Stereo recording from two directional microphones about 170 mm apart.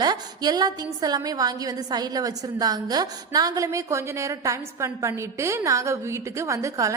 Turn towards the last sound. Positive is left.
turn(degrees=-20)  # may be behind; listen again after turning